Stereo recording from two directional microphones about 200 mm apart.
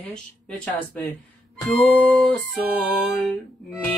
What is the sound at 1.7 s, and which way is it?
Music, centre (ahead or behind).